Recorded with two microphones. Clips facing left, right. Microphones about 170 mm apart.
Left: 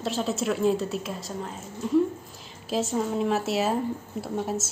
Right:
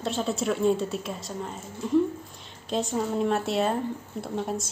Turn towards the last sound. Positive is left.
turn(degrees=5)  # may be behind; listen again after turning